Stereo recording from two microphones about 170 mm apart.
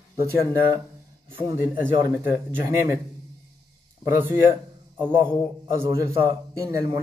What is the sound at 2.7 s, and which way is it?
Speech, 15° right (ahead or behind).